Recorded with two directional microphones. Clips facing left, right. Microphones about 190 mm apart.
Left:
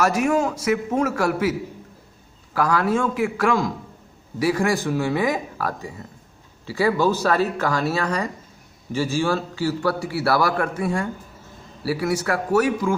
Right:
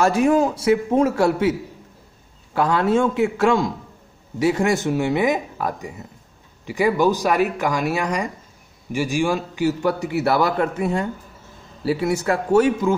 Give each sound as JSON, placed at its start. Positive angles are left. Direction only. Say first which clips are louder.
{"t": 0.0, "sound": "a man's voice", "louder": "right 3 dB", "side_deg": -30}